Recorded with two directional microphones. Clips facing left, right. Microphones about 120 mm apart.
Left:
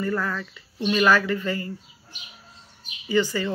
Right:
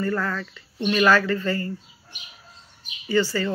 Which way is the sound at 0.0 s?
10° left (ahead or behind).